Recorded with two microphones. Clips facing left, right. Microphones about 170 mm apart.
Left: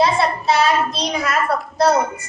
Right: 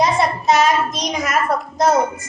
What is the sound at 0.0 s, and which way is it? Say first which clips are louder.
Child singing: even; 15° right (ahead or behind).